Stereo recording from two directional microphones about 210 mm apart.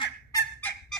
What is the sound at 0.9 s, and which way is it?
Fowl, centre (ahead or behind).